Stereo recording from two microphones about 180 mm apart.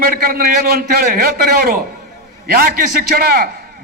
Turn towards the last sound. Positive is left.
turn(degrees=-55)  # may be behind; listen again after turning